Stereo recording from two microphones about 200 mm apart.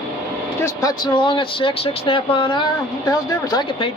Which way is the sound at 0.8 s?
25° left (ahead or behind).